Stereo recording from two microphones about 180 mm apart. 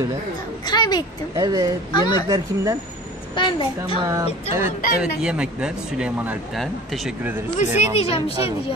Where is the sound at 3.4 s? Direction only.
25° left (ahead or behind).